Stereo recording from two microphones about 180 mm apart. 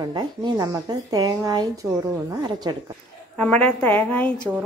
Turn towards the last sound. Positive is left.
turn(degrees=10)  # may be behind; listen again after turning